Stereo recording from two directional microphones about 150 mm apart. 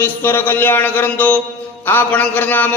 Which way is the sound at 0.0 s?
15° left (ahead or behind).